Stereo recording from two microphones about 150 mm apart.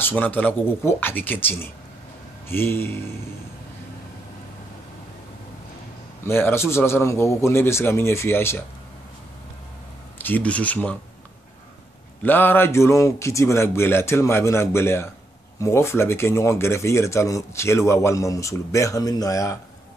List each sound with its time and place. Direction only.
0.0 s a man's voice: 10° left (ahead or behind)
6.2 s a man's voice: 15° left (ahead or behind)
10.1 s a man's voice: 10° left (ahead or behind)
12.2 s a man's voice: 10° left (ahead or behind)